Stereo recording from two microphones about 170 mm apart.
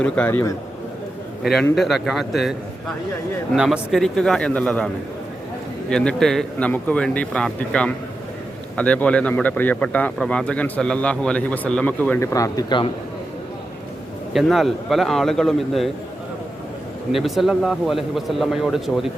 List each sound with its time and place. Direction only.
0.0 s a man's voice: 10° left (ahead or behind)
1.7 s speech: centre (ahead or behind)
5.9 s a man's voice: 5° left (ahead or behind); by 12.9 s 25° left (ahead or behind)
14.3 s speech: centre (ahead or behind)
17.1 s speech: centre (ahead or behind)